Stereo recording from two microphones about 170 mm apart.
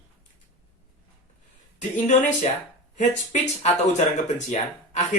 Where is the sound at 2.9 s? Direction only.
45° left (ahead or behind).